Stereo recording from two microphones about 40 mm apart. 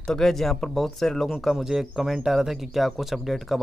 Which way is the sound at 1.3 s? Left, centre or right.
Centre.